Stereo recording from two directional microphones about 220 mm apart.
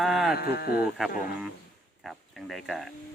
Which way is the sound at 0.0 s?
Centre (ahead or behind).